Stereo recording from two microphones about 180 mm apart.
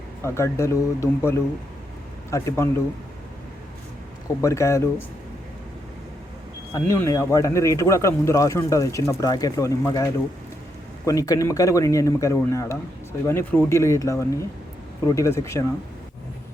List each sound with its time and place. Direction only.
0.2 s speech: 15° left (ahead or behind)
4.4 s speech: 15° left (ahead or behind)
6.7 s speech: 15° left (ahead or behind)